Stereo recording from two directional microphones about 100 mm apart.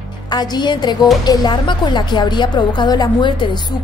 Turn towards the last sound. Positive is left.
turn(degrees=50)  # may be behind; listen again after turning